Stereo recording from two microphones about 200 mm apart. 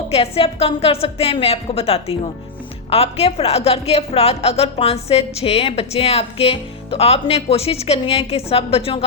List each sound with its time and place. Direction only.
0.1 s a woman's voice: 30° left (ahead or behind)